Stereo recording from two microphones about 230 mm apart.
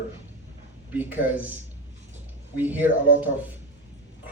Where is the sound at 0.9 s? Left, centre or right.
Centre.